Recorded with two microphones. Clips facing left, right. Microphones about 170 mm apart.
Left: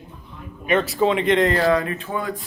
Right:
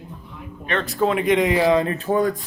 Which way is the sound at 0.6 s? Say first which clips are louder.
Left 5 dB; 10° left (ahead or behind).